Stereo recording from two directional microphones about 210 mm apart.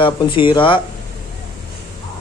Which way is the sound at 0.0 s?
25° left (ahead or behind).